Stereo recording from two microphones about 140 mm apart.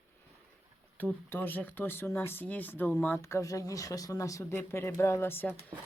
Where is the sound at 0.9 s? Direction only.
15° left (ahead or behind).